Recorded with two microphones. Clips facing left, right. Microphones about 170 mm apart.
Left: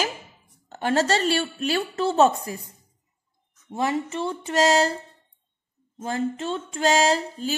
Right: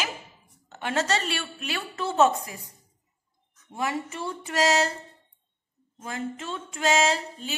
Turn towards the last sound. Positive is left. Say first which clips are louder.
# left 5 dB
turn(degrees=35)  # may be behind; listen again after turning